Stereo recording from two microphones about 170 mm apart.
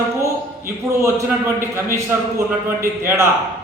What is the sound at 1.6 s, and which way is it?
A man's voice, 15° right (ahead or behind).